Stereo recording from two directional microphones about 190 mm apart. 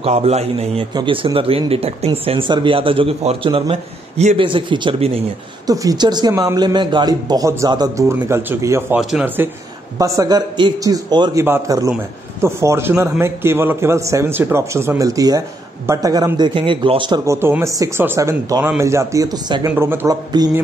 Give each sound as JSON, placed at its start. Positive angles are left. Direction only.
{"t": 0.0, "sound": "a man's voice", "side_deg": -35}